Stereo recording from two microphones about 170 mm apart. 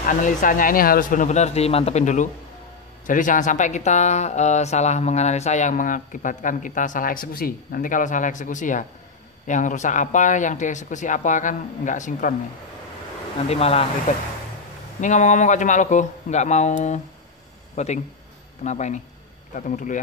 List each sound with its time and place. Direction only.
0.0 s speech: 50° left (ahead or behind)
13.5 s speech: 35° left (ahead or behind)
15.0 s speech: 45° left (ahead or behind)